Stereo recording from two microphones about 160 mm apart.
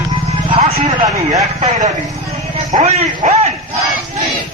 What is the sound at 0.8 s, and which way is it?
A man's voice, 45° right (ahead or behind).